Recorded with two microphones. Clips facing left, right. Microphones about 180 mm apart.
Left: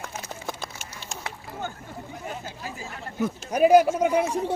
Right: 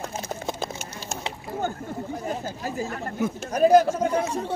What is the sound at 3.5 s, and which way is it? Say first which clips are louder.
Speech: even; 10° left (ahead or behind).